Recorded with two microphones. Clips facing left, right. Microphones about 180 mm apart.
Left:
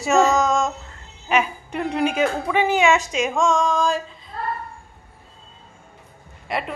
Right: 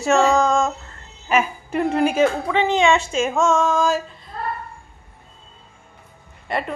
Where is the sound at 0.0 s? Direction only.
Centre (ahead or behind).